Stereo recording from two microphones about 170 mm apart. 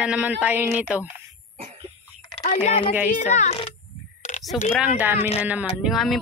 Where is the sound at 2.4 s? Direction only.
40° left (ahead or behind).